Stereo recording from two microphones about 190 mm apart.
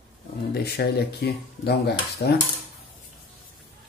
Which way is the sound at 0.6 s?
55° left (ahead or behind).